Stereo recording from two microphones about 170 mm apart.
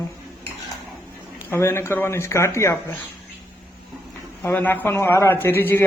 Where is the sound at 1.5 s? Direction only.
15° left (ahead or behind).